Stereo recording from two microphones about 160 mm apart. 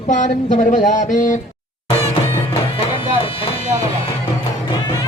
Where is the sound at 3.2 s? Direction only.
35° left (ahead or behind).